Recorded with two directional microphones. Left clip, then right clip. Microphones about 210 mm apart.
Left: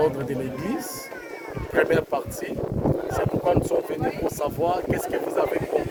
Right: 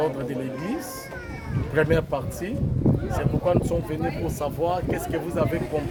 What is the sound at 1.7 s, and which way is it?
Speech, 30° left (ahead or behind).